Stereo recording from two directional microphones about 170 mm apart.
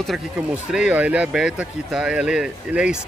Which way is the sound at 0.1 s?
Centre (ahead or behind).